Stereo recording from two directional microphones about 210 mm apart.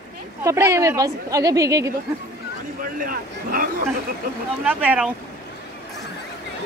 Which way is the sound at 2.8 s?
40° right (ahead or behind).